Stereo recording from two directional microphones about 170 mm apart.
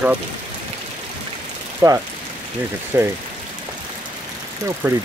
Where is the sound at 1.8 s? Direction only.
20° right (ahead or behind).